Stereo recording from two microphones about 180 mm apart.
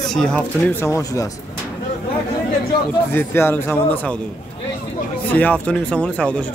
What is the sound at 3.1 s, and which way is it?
Speech, 10° left (ahead or behind).